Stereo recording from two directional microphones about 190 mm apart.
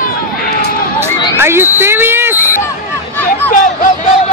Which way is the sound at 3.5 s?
45° left (ahead or behind).